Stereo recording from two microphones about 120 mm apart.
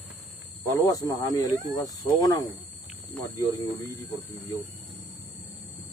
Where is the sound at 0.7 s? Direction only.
30° left (ahead or behind).